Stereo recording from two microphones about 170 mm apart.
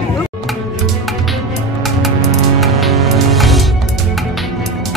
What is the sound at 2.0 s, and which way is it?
Music, centre (ahead or behind).